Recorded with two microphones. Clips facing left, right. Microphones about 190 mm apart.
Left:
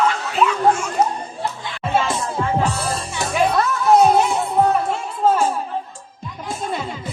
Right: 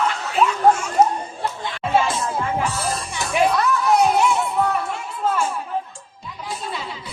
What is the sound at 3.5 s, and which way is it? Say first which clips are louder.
Music: left 3 dB; 40° left (ahead or behind).